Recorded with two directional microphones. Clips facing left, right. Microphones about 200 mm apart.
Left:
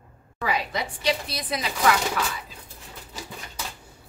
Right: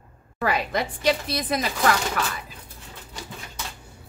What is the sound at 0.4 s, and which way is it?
A woman's voice, 50° right (ahead or behind).